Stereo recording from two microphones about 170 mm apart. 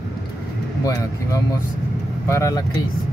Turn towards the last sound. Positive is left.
turn(degrees=20)  # may be behind; listen again after turning